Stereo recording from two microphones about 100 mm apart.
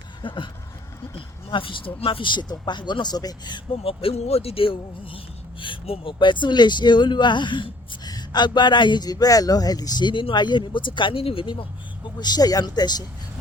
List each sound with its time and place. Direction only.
0.2 s speech: 55° left (ahead or behind)
3.8 s speech: 80° left
6.1 s speech: 50° left (ahead or behind)
12.2 s speech: 40° left (ahead or behind)